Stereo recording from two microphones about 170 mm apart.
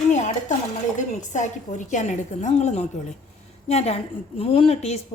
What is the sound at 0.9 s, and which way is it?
A woman's voice, 45° left (ahead or behind).